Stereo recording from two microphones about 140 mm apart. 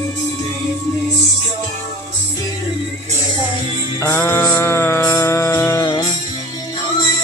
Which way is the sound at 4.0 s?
15° left (ahead or behind).